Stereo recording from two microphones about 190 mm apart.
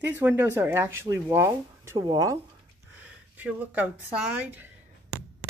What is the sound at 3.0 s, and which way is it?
Speech, 5° right (ahead or behind).